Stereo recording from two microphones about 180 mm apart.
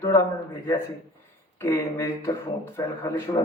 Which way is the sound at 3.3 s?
25° left (ahead or behind).